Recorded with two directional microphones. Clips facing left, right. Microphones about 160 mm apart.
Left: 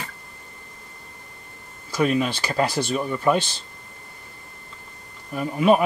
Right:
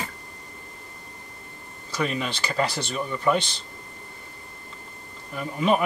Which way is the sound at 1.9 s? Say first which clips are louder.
Left 6 dB; 10° left (ahead or behind).